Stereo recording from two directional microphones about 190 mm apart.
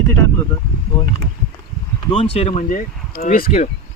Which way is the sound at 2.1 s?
30° left (ahead or behind).